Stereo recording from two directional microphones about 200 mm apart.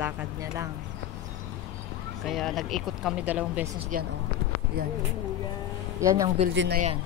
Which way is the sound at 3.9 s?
45° right (ahead or behind).